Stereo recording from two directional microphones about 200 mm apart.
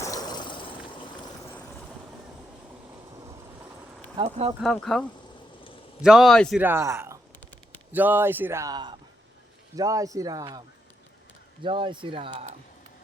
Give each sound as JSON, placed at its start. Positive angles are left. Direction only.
{"t": 0.0, "sound": "vehicle", "side_deg": 20}
{"t": 4.2, "sound": "speech", "side_deg": -30}
{"t": 4.6, "sound": "a man's voice", "side_deg": 5}
{"t": 6.6, "sound": "speech", "side_deg": -10}
{"t": 7.3, "sound": "a sound", "side_deg": 10}
{"t": 7.9, "sound": "speech", "side_deg": -10}
{"t": 11.6, "sound": "speech", "side_deg": -25}